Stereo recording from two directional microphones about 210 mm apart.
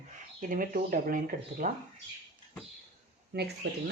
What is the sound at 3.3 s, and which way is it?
Speech, 50° right (ahead or behind).